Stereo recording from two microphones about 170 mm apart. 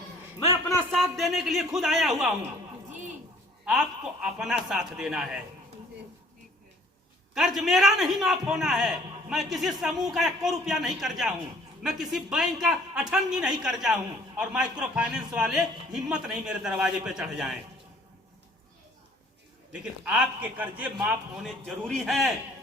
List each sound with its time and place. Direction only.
0.6 s a man's voice: centre (ahead or behind)
3.7 s a man's voice: 5° right (ahead or behind)
7.3 s a man's voice: centre (ahead or behind)
19.8 s a man's voice: 5° right (ahead or behind)